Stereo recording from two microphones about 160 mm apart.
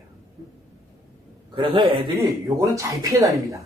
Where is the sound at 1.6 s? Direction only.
30° right (ahead or behind).